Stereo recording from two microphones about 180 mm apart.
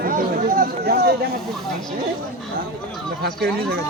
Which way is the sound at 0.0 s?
50° right (ahead or behind).